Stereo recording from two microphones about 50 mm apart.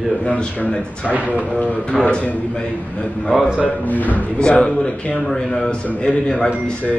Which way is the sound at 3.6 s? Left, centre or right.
Left.